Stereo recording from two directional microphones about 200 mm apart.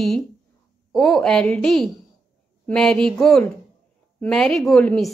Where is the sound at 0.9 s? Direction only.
Centre (ahead or behind).